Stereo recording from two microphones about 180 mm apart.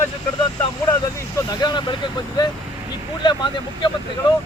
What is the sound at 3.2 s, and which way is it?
Speech, 25° left (ahead or behind).